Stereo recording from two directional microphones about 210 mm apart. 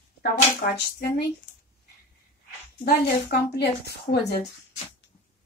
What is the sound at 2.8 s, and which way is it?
Speech, 50° left (ahead or behind).